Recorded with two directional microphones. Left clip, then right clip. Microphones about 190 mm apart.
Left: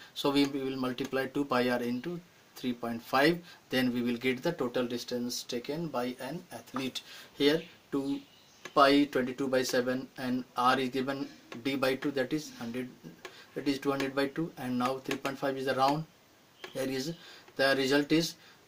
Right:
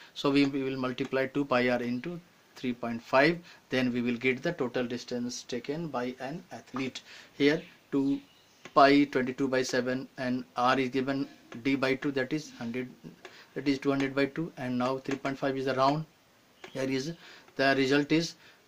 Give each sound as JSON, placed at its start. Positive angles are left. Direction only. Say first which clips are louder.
{"t": 0.1, "sound": "speech", "louder": "right 2 dB", "side_deg": -35}